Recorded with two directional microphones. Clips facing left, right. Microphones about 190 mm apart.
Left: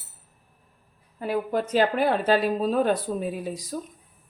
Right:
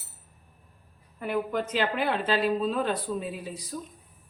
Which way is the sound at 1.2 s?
35° left (ahead or behind).